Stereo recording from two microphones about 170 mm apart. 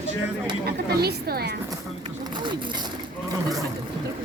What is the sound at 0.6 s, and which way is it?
Speech, 65° right (ahead or behind).